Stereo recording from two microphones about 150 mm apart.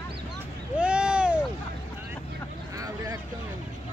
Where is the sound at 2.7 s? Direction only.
25° right (ahead or behind).